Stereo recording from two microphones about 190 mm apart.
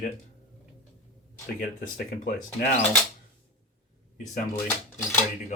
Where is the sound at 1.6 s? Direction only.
45° left (ahead or behind).